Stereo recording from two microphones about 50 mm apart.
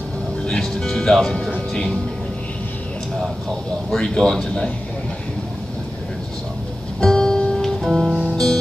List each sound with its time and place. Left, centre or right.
0.5 s music: centre
1.7 s speech: centre
3.4 s a man's voice: centre
7.0 s music: centre
8.1 s music: centre